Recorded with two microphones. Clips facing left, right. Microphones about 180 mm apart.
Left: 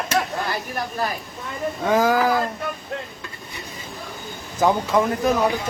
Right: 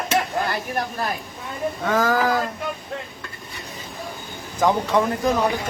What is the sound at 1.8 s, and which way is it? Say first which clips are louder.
Speech: left 2 dB; 10° left (ahead or behind).